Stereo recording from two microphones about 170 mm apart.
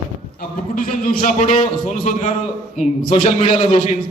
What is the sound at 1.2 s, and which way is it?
Speech, 50° left (ahead or behind).